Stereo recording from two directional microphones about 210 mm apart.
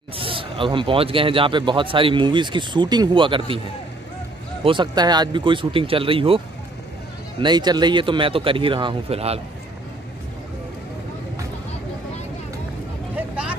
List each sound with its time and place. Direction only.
0.2 s speech: 25° right (ahead or behind)
4.6 s speech: 20° right (ahead or behind)
13.1 s vehicle: 5° right (ahead or behind)